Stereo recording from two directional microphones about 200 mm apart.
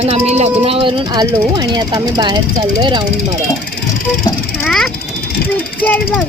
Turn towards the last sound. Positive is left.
turn(degrees=10)  # may be behind; listen again after turning